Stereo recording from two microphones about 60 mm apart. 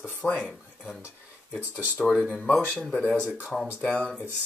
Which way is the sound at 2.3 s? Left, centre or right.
Left.